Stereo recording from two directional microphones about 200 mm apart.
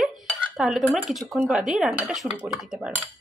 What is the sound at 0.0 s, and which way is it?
Dishes, centre (ahead or behind).